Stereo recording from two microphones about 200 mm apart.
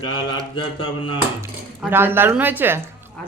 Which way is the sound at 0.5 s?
25° left (ahead or behind).